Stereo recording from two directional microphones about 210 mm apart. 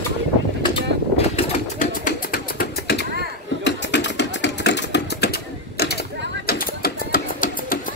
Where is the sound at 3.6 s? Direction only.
55° left (ahead or behind).